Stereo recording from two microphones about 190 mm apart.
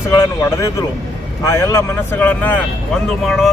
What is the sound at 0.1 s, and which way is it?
Speech, 15° left (ahead or behind).